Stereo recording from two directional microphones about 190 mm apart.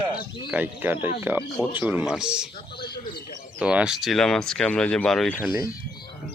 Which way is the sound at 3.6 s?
5° right (ahead or behind).